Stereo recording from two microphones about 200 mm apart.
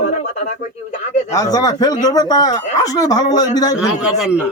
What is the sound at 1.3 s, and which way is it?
A man's voice, 15° left (ahead or behind).